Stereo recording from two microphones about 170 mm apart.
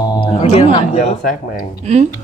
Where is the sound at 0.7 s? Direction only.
45° left (ahead or behind).